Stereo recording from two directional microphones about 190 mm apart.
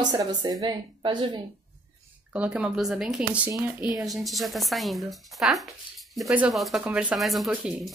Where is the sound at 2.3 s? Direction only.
5° right (ahead or behind).